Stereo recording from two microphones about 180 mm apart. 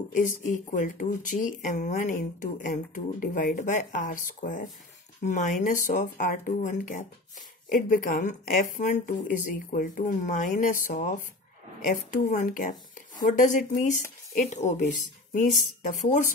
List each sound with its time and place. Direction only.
0.2 s a woman's voice: 45° left (ahead or behind)